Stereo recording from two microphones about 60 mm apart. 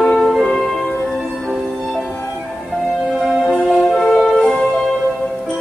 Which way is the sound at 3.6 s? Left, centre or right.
Centre.